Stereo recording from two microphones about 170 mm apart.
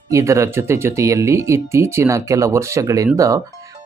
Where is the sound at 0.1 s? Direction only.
20° right (ahead or behind).